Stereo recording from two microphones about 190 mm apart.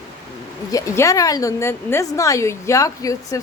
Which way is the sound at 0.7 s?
15° left (ahead or behind).